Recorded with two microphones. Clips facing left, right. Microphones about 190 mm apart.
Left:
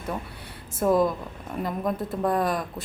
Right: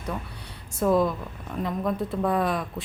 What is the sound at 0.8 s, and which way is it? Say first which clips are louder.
A woman's voice: left 1 dB; centre (ahead or behind).